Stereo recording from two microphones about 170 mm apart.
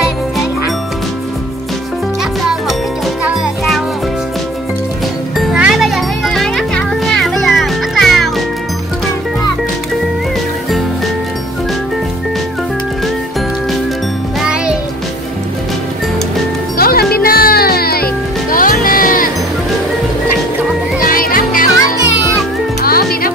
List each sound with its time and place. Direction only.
3.3 s music: centre (ahead or behind)
5.4 s music: 5° right (ahead or behind)
14.4 s music: 5° right (ahead or behind)
16.7 s music: 60° left (ahead or behind)
21.0 s music: 55° left (ahead or behind)
22.8 s music: 60° left (ahead or behind)